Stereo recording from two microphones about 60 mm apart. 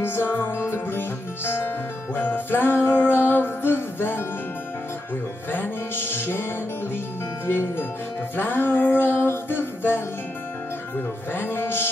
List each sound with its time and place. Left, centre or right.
0.0 s music: left
5.5 s music: left
7.4 s music: left
11.3 s music: left